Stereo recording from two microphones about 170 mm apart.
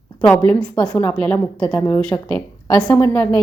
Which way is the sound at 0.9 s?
10° left (ahead or behind).